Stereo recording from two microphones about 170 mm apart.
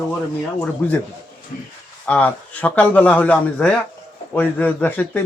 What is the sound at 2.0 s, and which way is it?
A man's voice, 10° left (ahead or behind).